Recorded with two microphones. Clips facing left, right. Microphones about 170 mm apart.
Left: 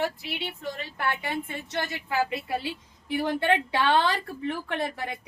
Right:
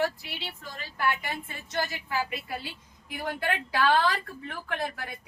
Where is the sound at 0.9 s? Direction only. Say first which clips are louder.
Right 3 dB; 25° left (ahead or behind).